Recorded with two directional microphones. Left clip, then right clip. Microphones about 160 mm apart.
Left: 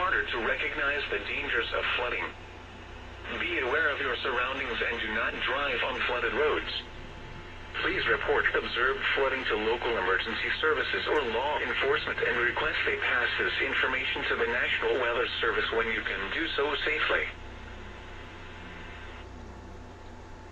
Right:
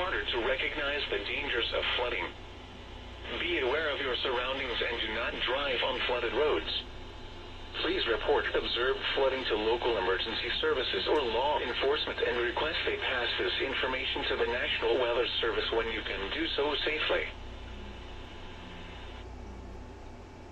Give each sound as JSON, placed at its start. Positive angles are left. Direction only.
{"t": 0.0, "sound": "speech", "side_deg": -15}
{"t": 3.3, "sound": "speech", "side_deg": -15}
{"t": 7.7, "sound": "speech", "side_deg": -25}